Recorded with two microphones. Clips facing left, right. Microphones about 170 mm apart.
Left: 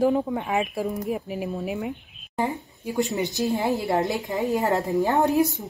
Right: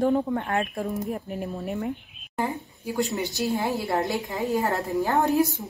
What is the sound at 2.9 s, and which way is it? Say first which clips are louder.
A woman's voice: left 2 dB; 20° left (ahead or behind).